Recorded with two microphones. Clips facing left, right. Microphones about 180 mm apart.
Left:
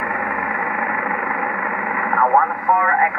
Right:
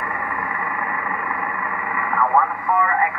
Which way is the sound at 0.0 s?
55° left (ahead or behind).